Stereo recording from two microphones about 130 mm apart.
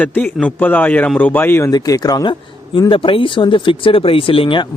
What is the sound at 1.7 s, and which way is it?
Speech, 30° left (ahead or behind).